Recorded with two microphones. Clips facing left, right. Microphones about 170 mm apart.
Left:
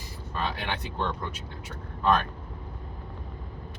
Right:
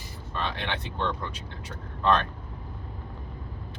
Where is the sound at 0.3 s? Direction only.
10° left (ahead or behind).